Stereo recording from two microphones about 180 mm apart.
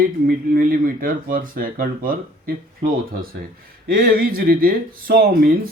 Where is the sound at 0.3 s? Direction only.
55° right (ahead or behind).